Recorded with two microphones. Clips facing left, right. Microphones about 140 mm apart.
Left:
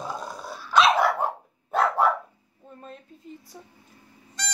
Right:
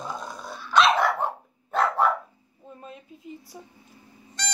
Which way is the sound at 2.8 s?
5° right (ahead or behind).